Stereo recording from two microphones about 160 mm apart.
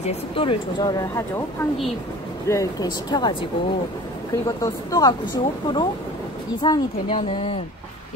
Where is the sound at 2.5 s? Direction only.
20° left (ahead or behind).